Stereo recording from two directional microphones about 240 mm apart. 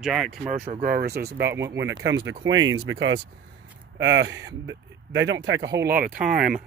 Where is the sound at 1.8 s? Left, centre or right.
Right.